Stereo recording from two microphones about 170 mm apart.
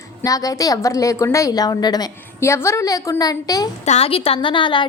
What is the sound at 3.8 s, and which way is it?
A woman's voice, 35° left (ahead or behind).